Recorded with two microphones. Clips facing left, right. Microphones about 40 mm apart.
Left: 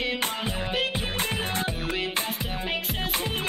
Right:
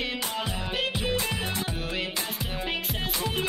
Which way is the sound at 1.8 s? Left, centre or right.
Centre.